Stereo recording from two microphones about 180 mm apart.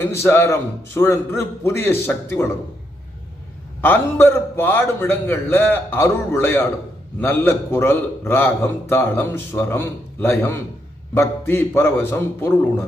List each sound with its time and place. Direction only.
0.0 s a man's voice: 15° left (ahead or behind)
3.8 s a man's voice: 10° left (ahead or behind)